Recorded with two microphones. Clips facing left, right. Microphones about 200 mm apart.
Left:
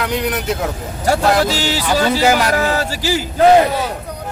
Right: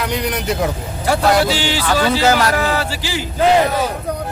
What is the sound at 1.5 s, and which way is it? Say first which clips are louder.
Music: even; 40° left (ahead or behind).